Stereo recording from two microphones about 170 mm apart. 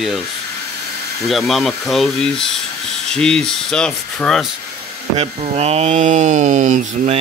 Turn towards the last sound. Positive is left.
turn(degrees=-45)  # may be behind; listen again after turning